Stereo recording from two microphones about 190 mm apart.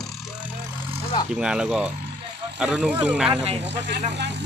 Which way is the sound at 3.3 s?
30° right (ahead or behind).